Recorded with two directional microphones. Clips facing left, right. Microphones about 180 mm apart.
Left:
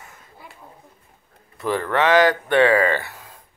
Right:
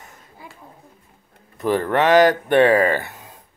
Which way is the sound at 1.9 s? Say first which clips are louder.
Right 2 dB; 15° right (ahead or behind).